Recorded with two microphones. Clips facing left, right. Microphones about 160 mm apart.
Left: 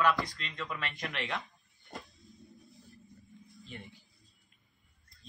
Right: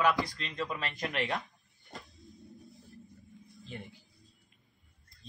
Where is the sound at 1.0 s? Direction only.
45° right (ahead or behind).